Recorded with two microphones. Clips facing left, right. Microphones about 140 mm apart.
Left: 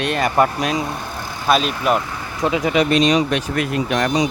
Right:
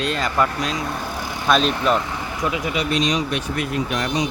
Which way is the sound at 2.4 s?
30° left (ahead or behind).